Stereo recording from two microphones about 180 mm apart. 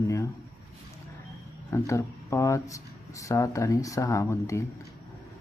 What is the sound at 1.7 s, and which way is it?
Speech, 15° left (ahead or behind).